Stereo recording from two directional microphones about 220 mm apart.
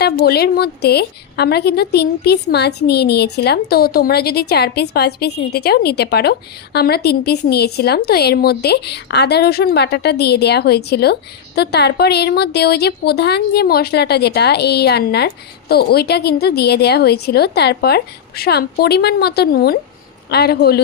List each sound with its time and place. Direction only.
0.0 s a woman's voice: 45° left (ahead or behind)